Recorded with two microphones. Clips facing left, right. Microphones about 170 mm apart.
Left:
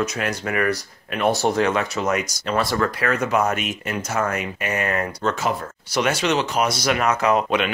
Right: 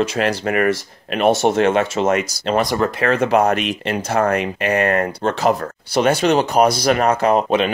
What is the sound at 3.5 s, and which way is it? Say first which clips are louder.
Speech: right 6 dB; 80° right.